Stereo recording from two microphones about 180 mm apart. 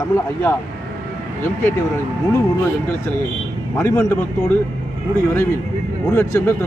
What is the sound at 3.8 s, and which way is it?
Speech, 10° left (ahead or behind).